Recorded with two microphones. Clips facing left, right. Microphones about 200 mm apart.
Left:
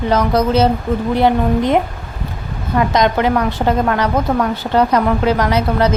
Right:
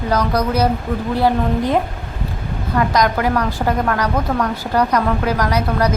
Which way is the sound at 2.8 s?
25° left (ahead or behind).